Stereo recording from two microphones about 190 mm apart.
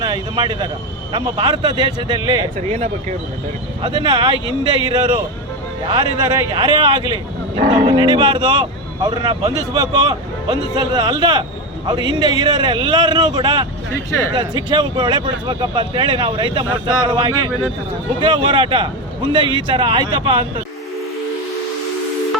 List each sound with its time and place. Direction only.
0.0 s speech: 25° right (ahead or behind)
2.6 s speech: 35° right (ahead or behind)
3.8 s speech: 25° right (ahead or behind)